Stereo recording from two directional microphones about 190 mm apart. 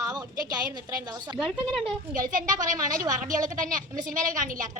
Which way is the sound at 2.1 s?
45° right (ahead or behind).